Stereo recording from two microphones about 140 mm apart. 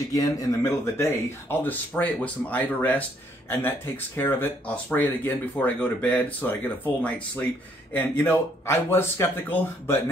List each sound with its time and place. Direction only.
0.1 s speech: 25° left (ahead or behind)